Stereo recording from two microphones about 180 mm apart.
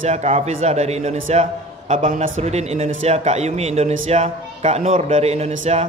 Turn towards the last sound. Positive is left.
turn(degrees=-35)  # may be behind; listen again after turning